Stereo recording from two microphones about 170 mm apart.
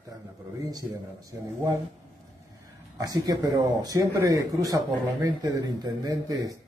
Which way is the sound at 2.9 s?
20° right (ahead or behind).